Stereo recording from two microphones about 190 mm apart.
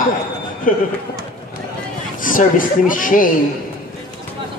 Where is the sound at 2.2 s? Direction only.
45° left (ahead or behind).